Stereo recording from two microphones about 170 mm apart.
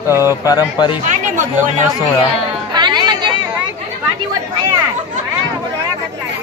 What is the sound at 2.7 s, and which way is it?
Chatter, 25° right (ahead or behind).